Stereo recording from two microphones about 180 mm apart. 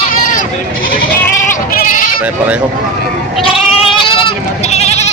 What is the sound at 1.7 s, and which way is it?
Bleat, 50° left (ahead or behind).